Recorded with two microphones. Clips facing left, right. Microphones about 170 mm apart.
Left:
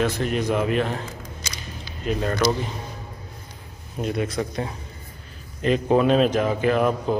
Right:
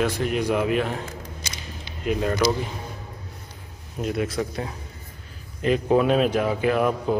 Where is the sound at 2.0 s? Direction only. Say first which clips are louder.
Even; 10° right (ahead or behind).